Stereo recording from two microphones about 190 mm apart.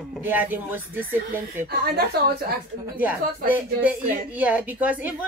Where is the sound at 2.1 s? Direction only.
55° right (ahead or behind).